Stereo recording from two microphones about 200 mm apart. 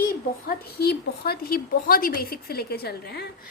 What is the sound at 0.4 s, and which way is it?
A woman's voice, 50° left (ahead or behind).